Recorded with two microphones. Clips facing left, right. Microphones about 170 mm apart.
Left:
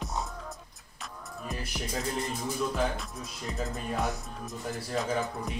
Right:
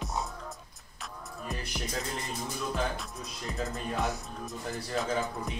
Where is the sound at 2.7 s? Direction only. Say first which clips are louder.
Left 2 dB; centre (ahead or behind).